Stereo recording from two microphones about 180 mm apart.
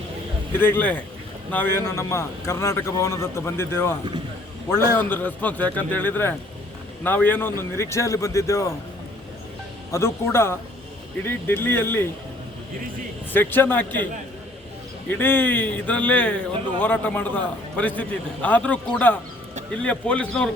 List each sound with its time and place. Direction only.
0.6 s speech: 10° left (ahead or behind)
9.9 s speech: 15° left (ahead or behind)
13.3 s speech: 10° left (ahead or behind)
15.1 s speech: 10° left (ahead or behind)